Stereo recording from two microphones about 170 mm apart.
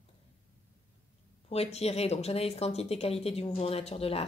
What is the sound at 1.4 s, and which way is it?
Speech, 35° left (ahead or behind).